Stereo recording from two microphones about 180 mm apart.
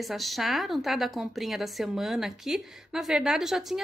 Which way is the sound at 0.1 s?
Centre (ahead or behind).